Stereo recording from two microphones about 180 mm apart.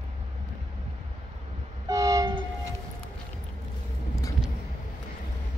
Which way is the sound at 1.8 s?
20° right (ahead or behind).